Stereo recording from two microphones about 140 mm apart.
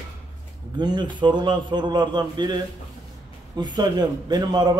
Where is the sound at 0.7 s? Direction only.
30° right (ahead or behind).